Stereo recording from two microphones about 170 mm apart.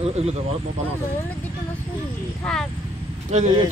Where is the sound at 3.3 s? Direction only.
45° right (ahead or behind).